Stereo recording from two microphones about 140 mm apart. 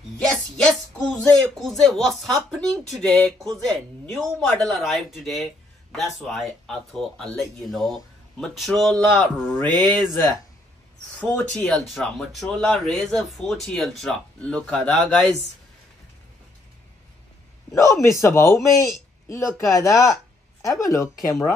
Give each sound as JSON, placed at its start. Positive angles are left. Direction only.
{"t": 0.3, "sound": "a sound", "side_deg": 5}
{"t": 1.6, "sound": "speech", "side_deg": 0}
{"t": 11.1, "sound": "speech", "side_deg": 5}
{"t": 17.6, "sound": "a man's voice", "side_deg": 20}